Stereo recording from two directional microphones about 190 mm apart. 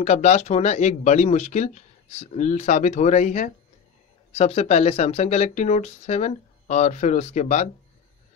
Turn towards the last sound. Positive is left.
turn(degrees=40)  # may be behind; listen again after turning